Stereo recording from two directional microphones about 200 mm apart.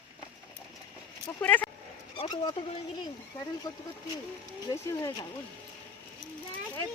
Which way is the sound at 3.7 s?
20° left (ahead or behind).